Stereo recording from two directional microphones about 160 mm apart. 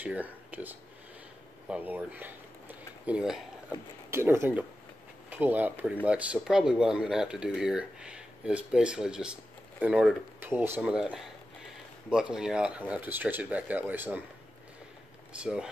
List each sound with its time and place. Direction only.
0.0 s speech: 10° right (ahead or behind)
4.1 s speech: 15° right (ahead or behind)
15.3 s speech: 5° right (ahead or behind)